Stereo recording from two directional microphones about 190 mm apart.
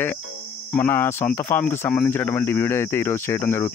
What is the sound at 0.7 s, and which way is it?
Speech, 10° left (ahead or behind).